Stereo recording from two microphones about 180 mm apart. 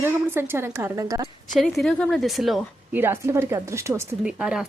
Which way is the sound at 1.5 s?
Centre (ahead or behind).